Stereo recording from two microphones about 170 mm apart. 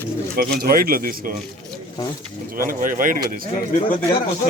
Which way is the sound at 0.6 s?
60° right (ahead or behind).